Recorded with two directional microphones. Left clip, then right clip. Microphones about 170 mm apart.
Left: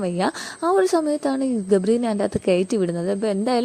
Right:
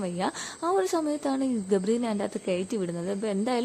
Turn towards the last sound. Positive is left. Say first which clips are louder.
# left 7 dB
turn(degrees=30)  # may be behind; listen again after turning